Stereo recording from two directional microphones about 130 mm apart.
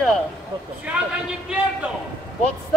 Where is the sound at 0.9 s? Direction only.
10° right (ahead or behind).